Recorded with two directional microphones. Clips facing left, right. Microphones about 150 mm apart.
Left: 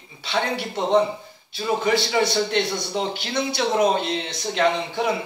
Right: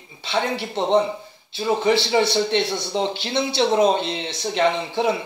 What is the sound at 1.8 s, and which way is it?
A man's voice, 25° right (ahead or behind).